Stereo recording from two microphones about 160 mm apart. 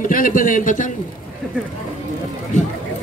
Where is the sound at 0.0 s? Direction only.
60° left (ahead or behind).